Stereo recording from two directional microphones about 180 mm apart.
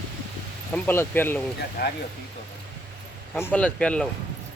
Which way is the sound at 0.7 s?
10° left (ahead or behind).